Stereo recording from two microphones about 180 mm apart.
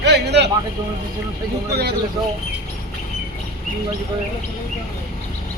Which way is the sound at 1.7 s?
65° right (ahead or behind).